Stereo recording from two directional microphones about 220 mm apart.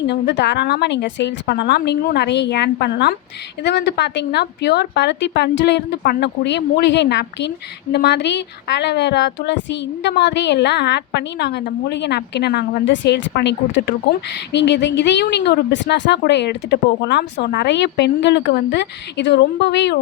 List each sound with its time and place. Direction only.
0.1 s a woman's voice: 50° left (ahead or behind)